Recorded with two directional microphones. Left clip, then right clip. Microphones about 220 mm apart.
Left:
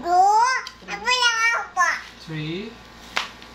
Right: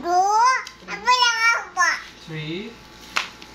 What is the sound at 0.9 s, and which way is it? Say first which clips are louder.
Child singing: right 2 dB; 5° right (ahead or behind).